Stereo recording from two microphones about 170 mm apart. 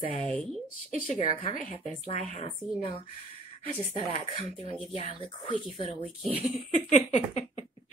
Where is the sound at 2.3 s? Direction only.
35° left (ahead or behind).